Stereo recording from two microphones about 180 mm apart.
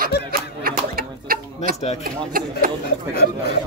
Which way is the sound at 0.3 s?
55° right (ahead or behind).